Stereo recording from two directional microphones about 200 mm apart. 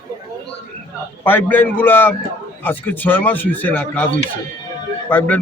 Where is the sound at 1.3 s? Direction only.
10° left (ahead or behind).